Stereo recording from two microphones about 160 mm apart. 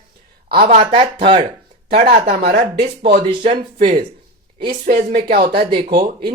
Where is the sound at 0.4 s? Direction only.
75° right (ahead or behind).